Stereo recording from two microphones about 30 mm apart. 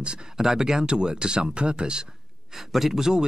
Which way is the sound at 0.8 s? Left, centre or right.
Right.